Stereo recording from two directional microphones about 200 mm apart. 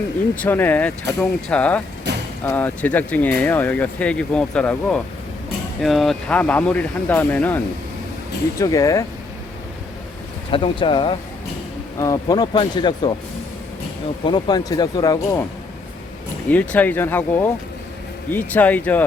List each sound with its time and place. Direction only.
0.3 s speech: 10° left (ahead or behind)
2.1 s vehicle: 55° right (ahead or behind)
2.4 s speech: 10° left (ahead or behind)
10.5 s speech: 25° left (ahead or behind)
14.3 s speech: 20° left (ahead or behind)
16.5 s speech: 10° left (ahead or behind)